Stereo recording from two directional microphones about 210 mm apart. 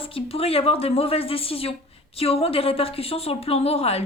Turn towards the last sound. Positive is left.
turn(degrees=30)  # may be behind; listen again after turning